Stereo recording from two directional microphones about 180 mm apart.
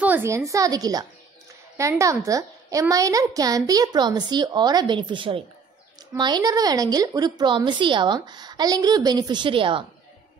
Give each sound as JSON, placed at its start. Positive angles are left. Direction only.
{"t": 0.0, "sound": "a woman's voice", "side_deg": -10}